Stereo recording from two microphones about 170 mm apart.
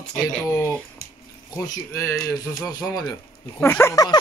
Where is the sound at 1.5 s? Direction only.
15° left (ahead or behind).